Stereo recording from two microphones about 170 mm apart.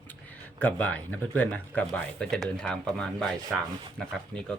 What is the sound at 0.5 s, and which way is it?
Speech, 10° left (ahead or behind).